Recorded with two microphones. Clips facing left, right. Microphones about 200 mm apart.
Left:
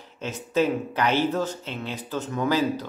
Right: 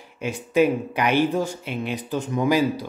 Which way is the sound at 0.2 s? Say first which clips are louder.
Right 4 dB; 15° right (ahead or behind).